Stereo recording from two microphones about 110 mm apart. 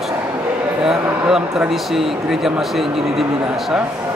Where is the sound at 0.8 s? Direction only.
5° right (ahead or behind).